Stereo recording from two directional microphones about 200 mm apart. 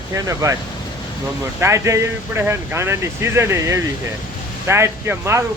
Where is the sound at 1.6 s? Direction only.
15° right (ahead or behind).